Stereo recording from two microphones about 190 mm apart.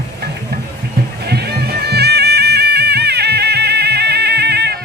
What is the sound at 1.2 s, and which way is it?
Music, 55° right (ahead or behind).